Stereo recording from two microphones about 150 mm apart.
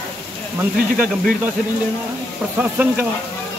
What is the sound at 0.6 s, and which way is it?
Speech, 10° right (ahead or behind).